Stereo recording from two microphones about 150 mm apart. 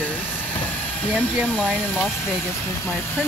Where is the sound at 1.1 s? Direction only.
5° right (ahead or behind).